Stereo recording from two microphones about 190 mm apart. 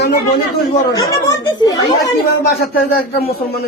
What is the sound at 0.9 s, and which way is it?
Speech, 20° left (ahead or behind).